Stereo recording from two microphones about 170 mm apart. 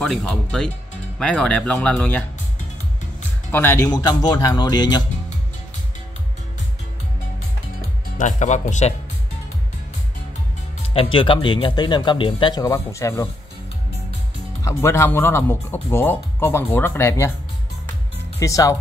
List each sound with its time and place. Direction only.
0.0 s speech: 5° left (ahead or behind)
3.5 s speech: 15° left (ahead or behind)
8.2 s speech: 45° left (ahead or behind)
10.9 s speech: 30° left (ahead or behind)
14.6 s speech: 15° left (ahead or behind)
18.4 s speech: 20° left (ahead or behind)